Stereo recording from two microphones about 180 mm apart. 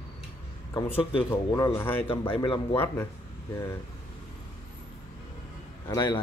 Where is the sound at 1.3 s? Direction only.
15° left (ahead or behind).